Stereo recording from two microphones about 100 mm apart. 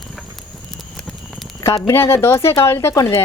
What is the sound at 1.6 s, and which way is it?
Speech, 35° left (ahead or behind).